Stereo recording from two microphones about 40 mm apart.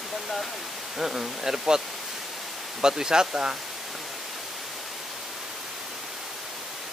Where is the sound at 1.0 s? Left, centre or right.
Centre.